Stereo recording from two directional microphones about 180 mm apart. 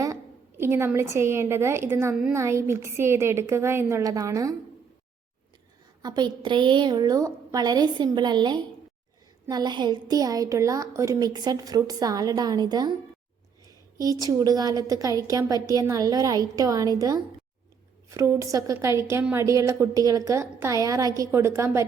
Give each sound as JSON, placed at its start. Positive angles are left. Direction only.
{"t": 0.0, "sound": "a woman's voice", "side_deg": -15}
{"t": 6.0, "sound": "a woman's voice", "side_deg": -25}
{"t": 14.0, "sound": "a woman's voice", "side_deg": -20}